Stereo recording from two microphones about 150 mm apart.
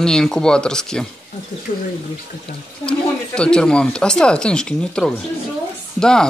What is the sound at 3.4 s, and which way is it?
Speech, 5° left (ahead or behind).